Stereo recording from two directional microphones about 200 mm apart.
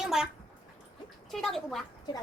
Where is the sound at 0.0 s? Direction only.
Centre (ahead or behind).